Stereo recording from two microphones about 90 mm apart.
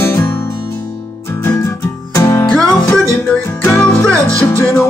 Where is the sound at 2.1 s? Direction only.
35° left (ahead or behind).